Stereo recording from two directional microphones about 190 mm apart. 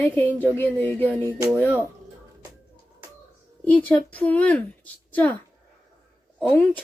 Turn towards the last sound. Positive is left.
turn(degrees=5)  # may be behind; listen again after turning